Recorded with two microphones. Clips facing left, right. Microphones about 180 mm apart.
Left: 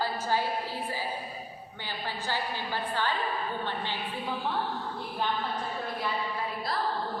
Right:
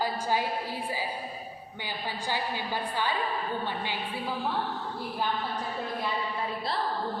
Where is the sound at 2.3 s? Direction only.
15° right (ahead or behind).